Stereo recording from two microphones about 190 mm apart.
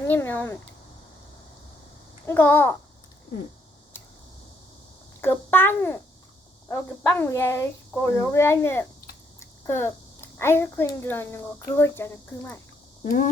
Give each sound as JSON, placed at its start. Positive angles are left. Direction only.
{"t": 0.1, "sound": "a child's voice", "side_deg": 10}
{"t": 2.2, "sound": "a child's voice", "side_deg": 10}
{"t": 5.2, "sound": "a child's voice", "side_deg": 10}
{"t": 13.1, "sound": "speech", "side_deg": 45}